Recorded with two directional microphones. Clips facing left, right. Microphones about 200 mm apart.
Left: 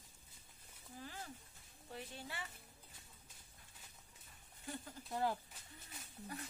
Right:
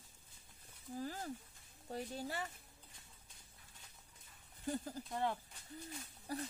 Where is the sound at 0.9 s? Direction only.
40° right (ahead or behind).